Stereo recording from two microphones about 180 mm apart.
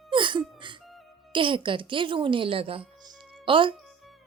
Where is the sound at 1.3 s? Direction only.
25° right (ahead or behind).